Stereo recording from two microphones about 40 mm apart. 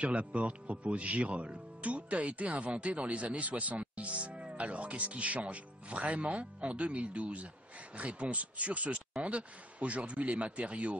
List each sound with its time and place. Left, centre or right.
0.0 s speech: right